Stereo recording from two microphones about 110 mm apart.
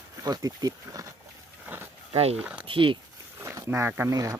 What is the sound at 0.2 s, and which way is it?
Speech, 35° right (ahead or behind).